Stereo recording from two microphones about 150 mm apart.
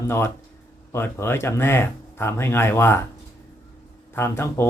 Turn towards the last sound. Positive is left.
turn(degrees=15)  # may be behind; listen again after turning